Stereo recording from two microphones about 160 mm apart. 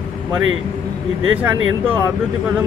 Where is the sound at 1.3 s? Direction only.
10° right (ahead or behind).